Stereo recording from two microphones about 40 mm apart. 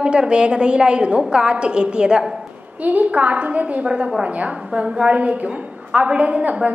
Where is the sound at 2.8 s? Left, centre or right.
Right.